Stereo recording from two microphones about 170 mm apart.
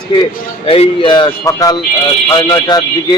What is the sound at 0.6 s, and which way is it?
Speech, 30° left (ahead or behind).